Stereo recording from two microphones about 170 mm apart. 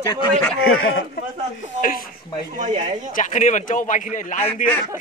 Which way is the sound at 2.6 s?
40° right (ahead or behind).